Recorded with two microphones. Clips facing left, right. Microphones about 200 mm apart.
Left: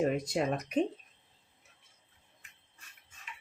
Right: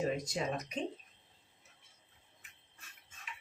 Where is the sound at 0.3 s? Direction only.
60° left (ahead or behind).